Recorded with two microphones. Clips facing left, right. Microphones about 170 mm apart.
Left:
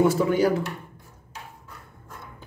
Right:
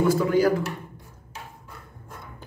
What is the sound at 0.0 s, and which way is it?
Speech, 25° left (ahead or behind).